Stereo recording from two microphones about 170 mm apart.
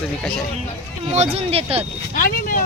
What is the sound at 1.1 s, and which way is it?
Speech, 35° right (ahead or behind).